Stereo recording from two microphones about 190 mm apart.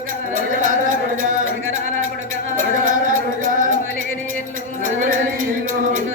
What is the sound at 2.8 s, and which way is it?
Music, 45° right (ahead or behind).